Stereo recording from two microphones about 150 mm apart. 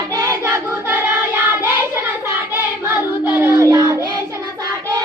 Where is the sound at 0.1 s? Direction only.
20° right (ahead or behind).